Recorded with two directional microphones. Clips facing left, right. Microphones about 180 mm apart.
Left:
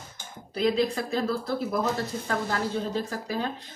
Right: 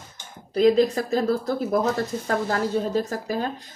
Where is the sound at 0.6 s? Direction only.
45° right (ahead or behind).